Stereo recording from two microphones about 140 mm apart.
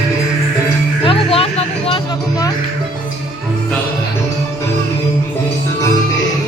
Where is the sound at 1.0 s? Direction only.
40° left (ahead or behind).